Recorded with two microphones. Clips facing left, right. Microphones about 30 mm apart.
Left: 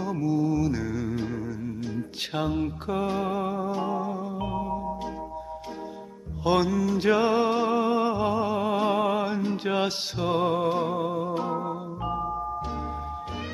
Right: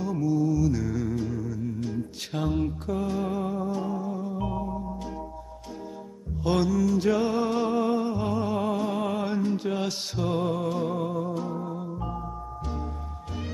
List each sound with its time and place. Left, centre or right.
0.0 s mantra: centre
0.3 s mantra: left
0.8 s music: centre
1.1 s music: left
2.4 s mantra: centre
2.9 s music: left
6.4 s music: centre
7.0 s music: left
7.5 s a sound: centre
8.2 s music: centre
9.4 s music: left
11.3 s music: left